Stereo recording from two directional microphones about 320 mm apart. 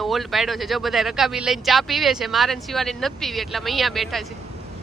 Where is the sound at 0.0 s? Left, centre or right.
Centre.